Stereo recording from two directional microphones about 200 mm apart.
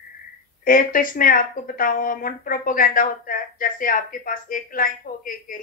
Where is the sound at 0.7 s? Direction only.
45° left (ahead or behind).